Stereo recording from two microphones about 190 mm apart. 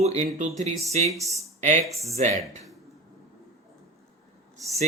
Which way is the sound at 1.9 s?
35° right (ahead or behind).